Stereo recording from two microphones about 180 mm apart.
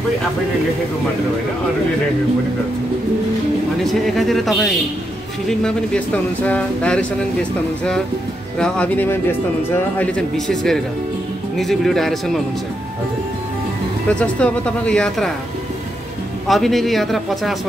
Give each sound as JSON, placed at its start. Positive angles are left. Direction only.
{"t": 3.8, "sound": "speech", "side_deg": 0}
{"t": 8.5, "sound": "speech", "side_deg": 5}
{"t": 14.0, "sound": "speech", "side_deg": 5}
{"t": 16.4, "sound": "speech", "side_deg": 0}